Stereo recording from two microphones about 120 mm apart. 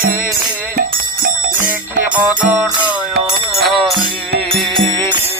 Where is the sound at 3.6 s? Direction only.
Centre (ahead or behind).